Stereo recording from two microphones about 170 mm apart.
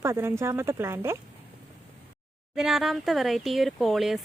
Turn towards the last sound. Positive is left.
turn(degrees=0)  # may be behind; listen again after turning